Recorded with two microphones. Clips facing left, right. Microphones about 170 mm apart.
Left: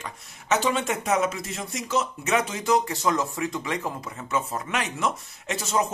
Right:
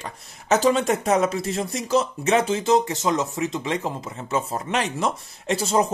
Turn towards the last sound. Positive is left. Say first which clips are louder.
# right 5 dB
turn(degrees=-35)  # may be behind; listen again after turning